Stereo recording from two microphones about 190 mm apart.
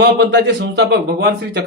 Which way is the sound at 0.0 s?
60° right (ahead or behind).